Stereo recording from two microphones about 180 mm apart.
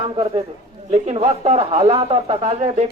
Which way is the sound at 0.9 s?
35° right (ahead or behind).